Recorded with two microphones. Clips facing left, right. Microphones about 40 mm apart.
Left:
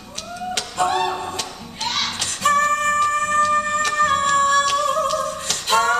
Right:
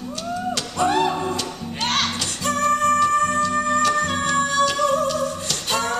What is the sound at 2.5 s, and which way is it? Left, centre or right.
Music, left.